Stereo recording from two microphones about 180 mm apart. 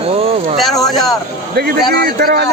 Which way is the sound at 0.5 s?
Centre (ahead or behind).